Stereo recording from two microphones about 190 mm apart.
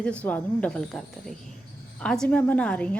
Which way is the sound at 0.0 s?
5° left (ahead or behind).